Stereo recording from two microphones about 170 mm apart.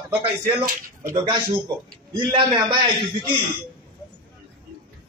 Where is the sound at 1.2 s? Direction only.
25° right (ahead or behind).